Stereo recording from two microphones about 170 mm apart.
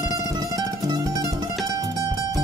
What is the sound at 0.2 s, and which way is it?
Music, 20° right (ahead or behind).